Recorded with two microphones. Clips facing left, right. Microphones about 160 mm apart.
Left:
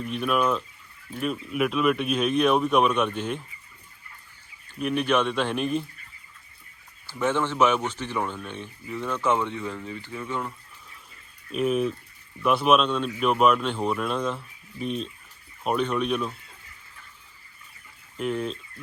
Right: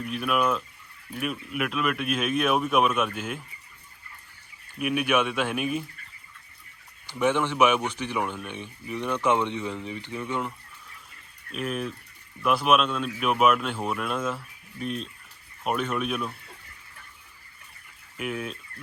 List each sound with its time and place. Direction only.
0.0 s a man's voice: 5° right (ahead or behind)
4.8 s speech: 10° right (ahead or behind)
7.1 s speech: 15° right (ahead or behind)
11.5 s a man's voice: centre (ahead or behind)
18.2 s a man's voice: 5° right (ahead or behind)